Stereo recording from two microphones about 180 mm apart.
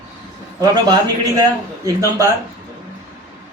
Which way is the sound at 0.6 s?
20° right (ahead or behind).